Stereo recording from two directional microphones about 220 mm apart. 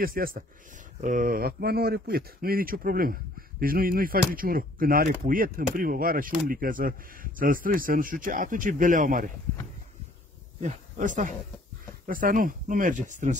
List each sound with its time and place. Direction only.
0.0 s speech: 40° right (ahead or behind)
10.6 s speech: 35° right (ahead or behind)